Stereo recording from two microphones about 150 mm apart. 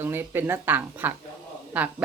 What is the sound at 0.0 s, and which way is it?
Speech, 15° right (ahead or behind).